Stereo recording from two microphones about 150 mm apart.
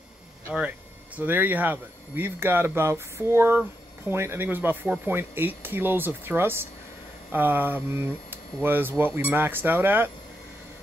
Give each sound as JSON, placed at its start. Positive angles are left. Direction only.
{"t": 0.6, "sound": "speech", "side_deg": -10}